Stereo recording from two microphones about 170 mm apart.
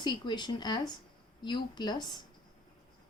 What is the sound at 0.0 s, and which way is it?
A woman's voice, 25° left (ahead or behind).